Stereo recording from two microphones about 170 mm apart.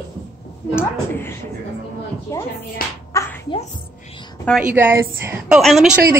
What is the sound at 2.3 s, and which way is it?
Music, 15° left (ahead or behind).